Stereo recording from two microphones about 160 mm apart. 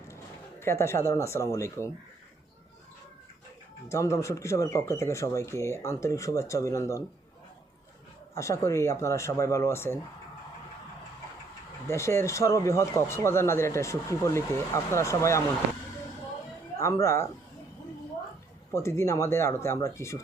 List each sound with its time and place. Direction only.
0.6 s speech: 15° left (ahead or behind)
3.8 s speech: 20° left (ahead or behind)
8.4 s speech: 20° left (ahead or behind)
11.9 s speech: 15° left (ahead or behind)
16.7 s speech: 20° left (ahead or behind)
18.7 s speech: 15° left (ahead or behind)